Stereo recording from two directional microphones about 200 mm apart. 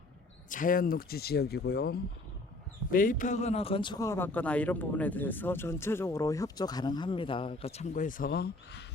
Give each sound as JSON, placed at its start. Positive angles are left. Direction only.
{"t": 0.5, "sound": "speech", "side_deg": 45}